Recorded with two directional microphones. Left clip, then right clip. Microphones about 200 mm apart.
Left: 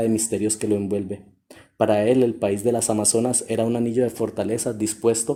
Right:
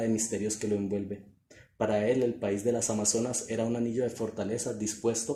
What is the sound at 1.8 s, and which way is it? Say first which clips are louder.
Speech: left 9 dB; 50° left (ahead or behind).